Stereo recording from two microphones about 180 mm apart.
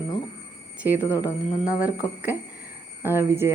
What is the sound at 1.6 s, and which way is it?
Speech, 5° right (ahead or behind).